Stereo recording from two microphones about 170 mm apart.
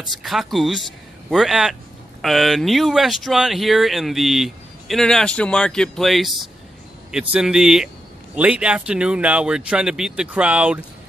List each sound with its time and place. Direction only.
0.2 s speech: centre (ahead or behind)